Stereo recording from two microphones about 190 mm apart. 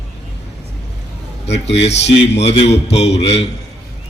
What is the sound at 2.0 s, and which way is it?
Speech, 65° left (ahead or behind).